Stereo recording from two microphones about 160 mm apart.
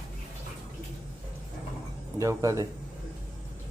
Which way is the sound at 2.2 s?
20° right (ahead or behind).